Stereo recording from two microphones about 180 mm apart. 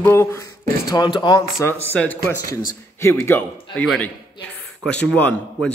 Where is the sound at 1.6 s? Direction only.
10° left (ahead or behind).